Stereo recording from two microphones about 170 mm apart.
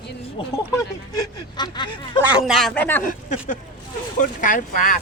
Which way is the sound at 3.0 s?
50° left (ahead or behind).